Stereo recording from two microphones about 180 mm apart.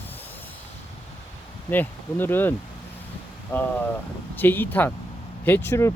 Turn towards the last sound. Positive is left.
turn(degrees=15)  # may be behind; listen again after turning